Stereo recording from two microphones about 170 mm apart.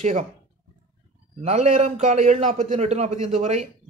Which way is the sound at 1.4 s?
40° right (ahead or behind).